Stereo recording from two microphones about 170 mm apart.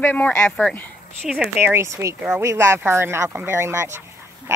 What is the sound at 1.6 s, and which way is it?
Speech, 15° right (ahead or behind).